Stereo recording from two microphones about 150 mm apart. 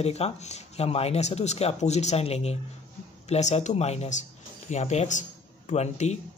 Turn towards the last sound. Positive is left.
turn(degrees=45)  # may be behind; listen again after turning